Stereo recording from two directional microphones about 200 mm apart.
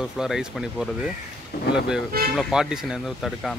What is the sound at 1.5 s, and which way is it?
Speech, 55° left (ahead or behind).